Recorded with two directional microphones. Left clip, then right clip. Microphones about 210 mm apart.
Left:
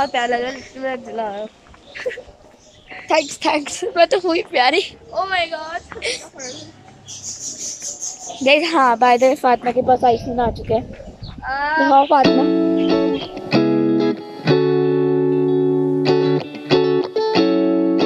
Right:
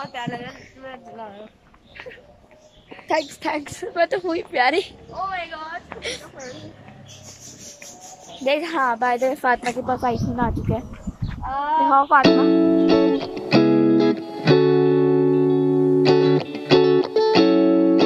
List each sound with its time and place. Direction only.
0.0 s speech: 30° left (ahead or behind)
3.1 s a woman's voice: 5° left (ahead or behind)
5.3 s speech: 20° left (ahead or behind)
5.7 s a woman's voice: 5° left (ahead or behind)
8.5 s a woman's voice: 10° left (ahead or behind)
11.9 s a woman's voice: 20° left (ahead or behind)
12.2 s music: centre (ahead or behind)